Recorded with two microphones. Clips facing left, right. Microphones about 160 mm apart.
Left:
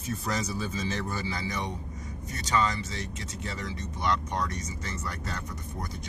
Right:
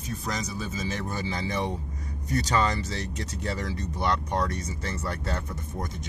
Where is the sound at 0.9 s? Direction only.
20° right (ahead or behind).